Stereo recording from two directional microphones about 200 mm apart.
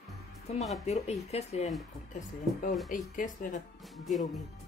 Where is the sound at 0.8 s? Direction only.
30° left (ahead or behind).